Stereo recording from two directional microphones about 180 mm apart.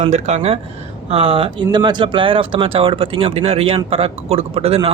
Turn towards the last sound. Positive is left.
turn(degrees=-30)  # may be behind; listen again after turning